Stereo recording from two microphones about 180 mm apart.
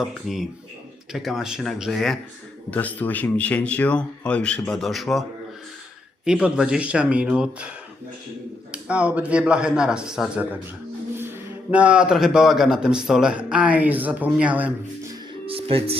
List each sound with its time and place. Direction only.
0.0 s a man's voice: centre (ahead or behind)
6.2 s a man's voice: 5° right (ahead or behind)
8.7 s a man's voice: 5° right (ahead or behind)
15.4 s music: 30° right (ahead or behind)